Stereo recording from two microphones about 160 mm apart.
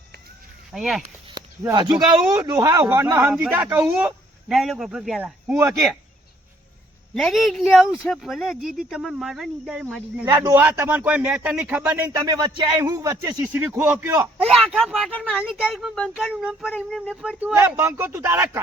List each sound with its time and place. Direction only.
0.7 s speech: centre (ahead or behind)
1.7 s a man's voice: 25° right (ahead or behind)
7.1 s speech: centre (ahead or behind)
10.2 s speech: 25° right (ahead or behind)
10.5 s a man's voice: 10° right (ahead or behind)
12.0 s speech: 20° right (ahead or behind)
13.6 s a man's voice: 5° right (ahead or behind)
14.4 s speech: 5° left (ahead or behind)
15.4 s speech: 5° right (ahead or behind)
17.7 s a man's voice: 15° right (ahead or behind)